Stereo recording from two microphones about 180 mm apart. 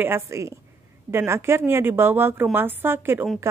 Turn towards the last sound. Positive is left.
turn(degrees=-15)  # may be behind; listen again after turning